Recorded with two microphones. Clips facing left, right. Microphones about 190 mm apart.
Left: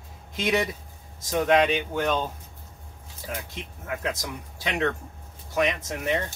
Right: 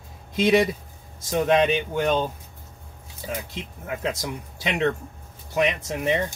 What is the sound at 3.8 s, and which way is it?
Speech, 25° right (ahead or behind).